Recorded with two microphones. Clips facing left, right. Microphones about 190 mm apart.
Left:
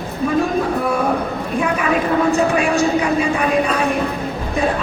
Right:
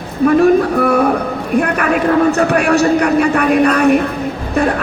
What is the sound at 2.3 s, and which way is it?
Speech, 70° right (ahead or behind).